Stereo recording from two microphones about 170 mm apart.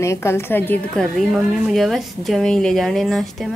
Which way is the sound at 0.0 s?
15° left (ahead or behind).